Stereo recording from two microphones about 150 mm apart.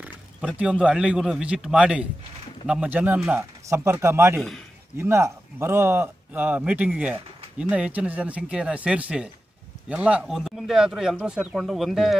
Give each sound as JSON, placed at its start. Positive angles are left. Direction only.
{"t": 0.0, "sound": "speech", "side_deg": -10}